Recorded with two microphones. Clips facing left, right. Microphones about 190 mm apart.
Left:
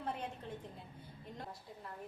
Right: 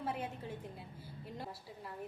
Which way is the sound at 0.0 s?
5° right (ahead or behind).